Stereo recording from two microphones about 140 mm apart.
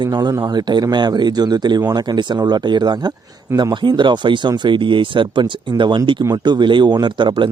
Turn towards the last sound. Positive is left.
turn(degrees=-35)  # may be behind; listen again after turning